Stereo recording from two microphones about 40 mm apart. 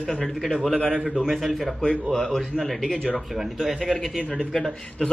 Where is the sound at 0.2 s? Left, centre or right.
Centre.